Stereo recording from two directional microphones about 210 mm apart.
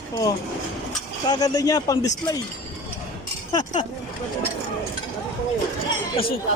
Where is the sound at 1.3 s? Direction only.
15° left (ahead or behind).